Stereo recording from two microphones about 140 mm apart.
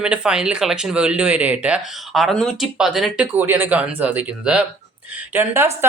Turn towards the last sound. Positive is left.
turn(degrees=-15)  # may be behind; listen again after turning